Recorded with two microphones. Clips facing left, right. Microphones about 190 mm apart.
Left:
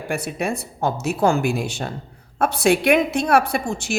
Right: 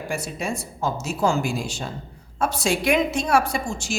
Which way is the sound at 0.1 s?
60° left (ahead or behind).